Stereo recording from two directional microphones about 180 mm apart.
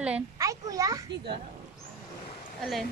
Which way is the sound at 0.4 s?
20° right (ahead or behind).